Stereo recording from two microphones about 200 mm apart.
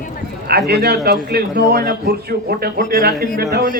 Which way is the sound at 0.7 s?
55° right (ahead or behind).